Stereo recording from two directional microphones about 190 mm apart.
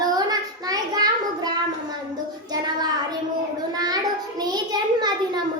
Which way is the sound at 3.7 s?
20° right (ahead or behind).